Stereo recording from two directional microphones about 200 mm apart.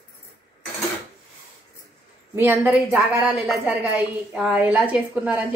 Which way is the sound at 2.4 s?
10° right (ahead or behind).